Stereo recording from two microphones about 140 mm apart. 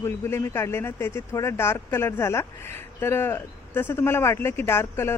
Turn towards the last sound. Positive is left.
turn(degrees=15)  # may be behind; listen again after turning